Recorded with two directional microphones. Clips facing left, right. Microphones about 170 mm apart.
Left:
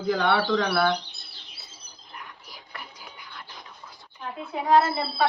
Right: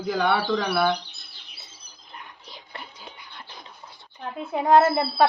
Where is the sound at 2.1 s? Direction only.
25° right (ahead or behind).